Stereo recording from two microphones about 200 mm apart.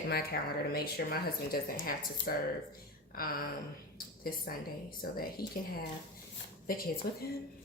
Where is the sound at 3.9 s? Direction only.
45° left (ahead or behind).